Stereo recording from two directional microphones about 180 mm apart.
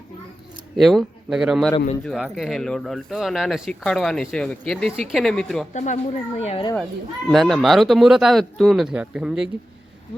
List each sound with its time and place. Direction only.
0.8 s speech: centre (ahead or behind)
5.7 s speech: 40° left (ahead or behind)
7.3 s speech: centre (ahead or behind)